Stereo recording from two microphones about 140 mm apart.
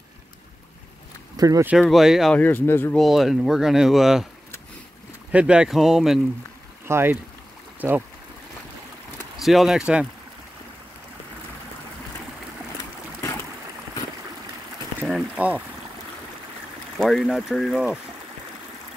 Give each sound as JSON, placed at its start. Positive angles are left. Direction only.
{"t": 1.3, "sound": "a sound", "side_deg": -25}
{"t": 1.8, "sound": "speech", "side_deg": 0}
{"t": 2.3, "sound": "speech", "side_deg": 15}
{"t": 3.0, "sound": "speech", "side_deg": 0}
{"t": 5.3, "sound": "speech", "side_deg": -10}
{"t": 6.9, "sound": "speech", "side_deg": -15}
{"t": 9.4, "sound": "speech", "side_deg": 0}
{"t": 15.0, "sound": "a sound", "side_deg": -5}
{"t": 17.0, "sound": "speech", "side_deg": 0}